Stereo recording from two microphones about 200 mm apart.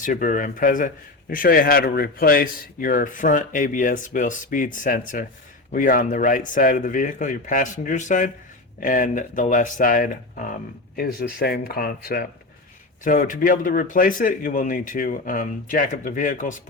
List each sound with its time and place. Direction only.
0.0 s speech: 40° left (ahead or behind)